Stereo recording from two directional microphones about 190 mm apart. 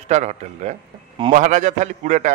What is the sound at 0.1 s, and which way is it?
A man's voice, 40° right (ahead or behind).